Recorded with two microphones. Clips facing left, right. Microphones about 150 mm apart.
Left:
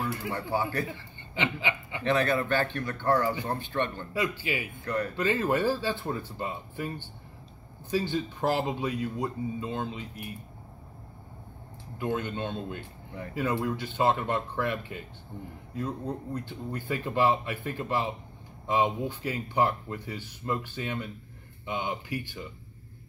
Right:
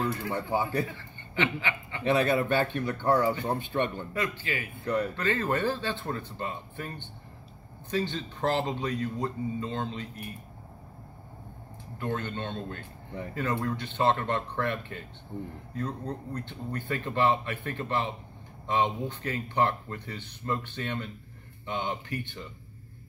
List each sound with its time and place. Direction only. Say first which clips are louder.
0.3 s speech: left 1 dB; 20° right (ahead or behind)
0.8 s speech: left 2 dB; 15° left (ahead or behind)
2.0 s speech: right 1 dB; 15° right (ahead or behind)
4.1 s speech: left 2 dB; 10° left (ahead or behind)
7.9 s speech: left 2 dB; 10° left (ahead or behind)
12.0 s speech: left 2 dB; 10° left (ahead or behind)